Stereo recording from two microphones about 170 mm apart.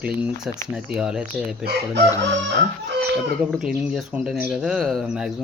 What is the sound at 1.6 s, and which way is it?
Chicken, 90° right.